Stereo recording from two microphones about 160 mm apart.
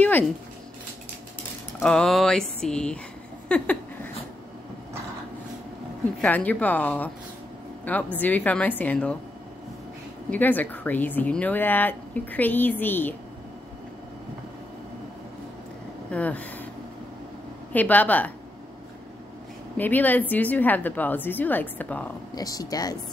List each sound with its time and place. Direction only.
1.8 s a sound: 5° left (ahead or behind)
6.2 s speech: 10° left (ahead or behind)
10.3 s speech: 10° left (ahead or behind)
16.1 s speech: 10° left (ahead or behind)
17.7 s speech: 10° left (ahead or behind)
19.8 s speech: 10° left (ahead or behind)
22.3 s speech: 20° left (ahead or behind)